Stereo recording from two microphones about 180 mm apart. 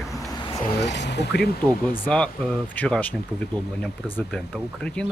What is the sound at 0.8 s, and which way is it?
Speech, 70° left (ahead or behind).